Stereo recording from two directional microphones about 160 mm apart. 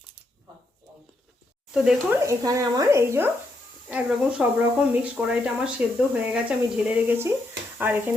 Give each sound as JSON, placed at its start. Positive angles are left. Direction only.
{"t": 1.7, "sound": "speech", "side_deg": -5}
{"t": 2.2, "sound": "speech", "side_deg": -20}